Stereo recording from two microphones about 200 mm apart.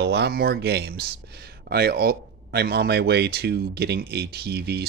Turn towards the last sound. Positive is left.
turn(degrees=-55)  # may be behind; listen again after turning